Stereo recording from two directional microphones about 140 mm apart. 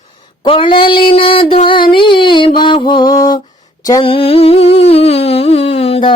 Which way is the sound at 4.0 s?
40° left (ahead or behind).